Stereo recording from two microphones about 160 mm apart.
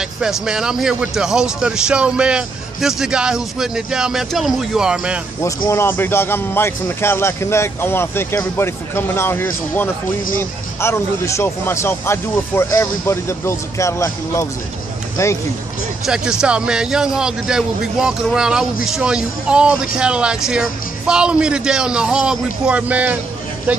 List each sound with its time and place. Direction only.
0.2 s a man's voice: 5° right (ahead or behind)
5.7 s a man's voice: 15° left (ahead or behind)
16.1 s a man's voice: 5° right (ahead or behind)